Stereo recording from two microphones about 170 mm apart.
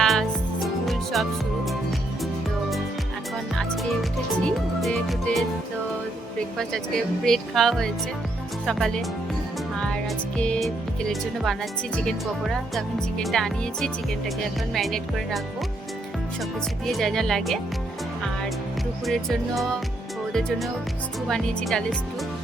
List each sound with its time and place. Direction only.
0.0 s music: centre (ahead or behind)
4.4 s music: centre (ahead or behind)
6.6 s speech: 5° left (ahead or behind)
16.4 s speech: centre (ahead or behind)
19.0 s speech: centre (ahead or behind)
21.2 s speech: centre (ahead or behind)